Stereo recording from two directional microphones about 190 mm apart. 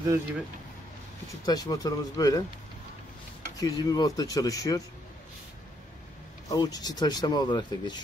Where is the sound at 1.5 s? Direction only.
20° left (ahead or behind).